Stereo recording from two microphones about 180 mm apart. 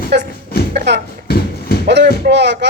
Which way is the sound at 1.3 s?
60° left (ahead or behind).